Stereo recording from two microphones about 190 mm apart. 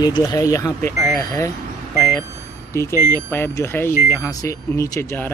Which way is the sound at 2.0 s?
15° left (ahead or behind).